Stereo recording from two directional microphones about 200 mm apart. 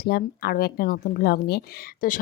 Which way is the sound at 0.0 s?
50° left (ahead or behind).